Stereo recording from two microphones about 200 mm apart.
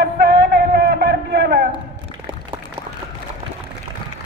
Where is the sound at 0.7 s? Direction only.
55° right (ahead or behind).